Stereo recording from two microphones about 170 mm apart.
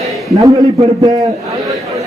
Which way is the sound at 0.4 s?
20° right (ahead or behind).